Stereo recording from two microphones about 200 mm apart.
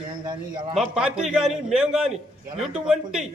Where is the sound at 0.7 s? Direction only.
5° right (ahead or behind).